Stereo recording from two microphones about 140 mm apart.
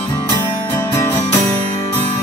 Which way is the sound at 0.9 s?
20° left (ahead or behind).